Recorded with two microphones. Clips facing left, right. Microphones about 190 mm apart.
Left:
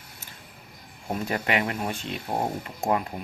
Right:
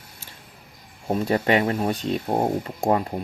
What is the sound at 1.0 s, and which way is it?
Speech, 30° right (ahead or behind).